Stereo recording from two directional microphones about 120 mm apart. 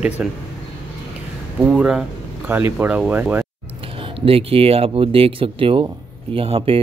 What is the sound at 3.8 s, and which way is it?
Speech, 50° right (ahead or behind).